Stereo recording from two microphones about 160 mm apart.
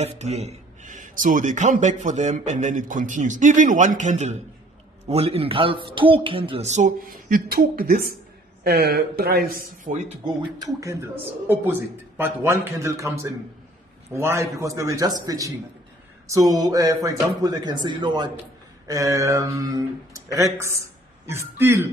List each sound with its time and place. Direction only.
0.0 s speech: 45° right (ahead or behind)
7.1 s a woman's voice: 65° right (ahead or behind)
10.2 s speech: 20° right (ahead or behind)